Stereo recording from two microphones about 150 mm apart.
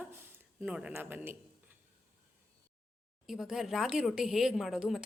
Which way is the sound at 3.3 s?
5° right (ahead or behind).